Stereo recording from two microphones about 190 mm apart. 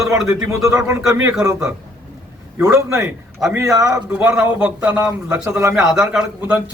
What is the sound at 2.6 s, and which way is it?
A man's voice, 15° right (ahead or behind).